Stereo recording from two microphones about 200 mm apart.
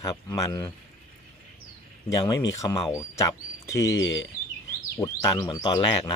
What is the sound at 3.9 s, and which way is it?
Speech, 65° left (ahead or behind).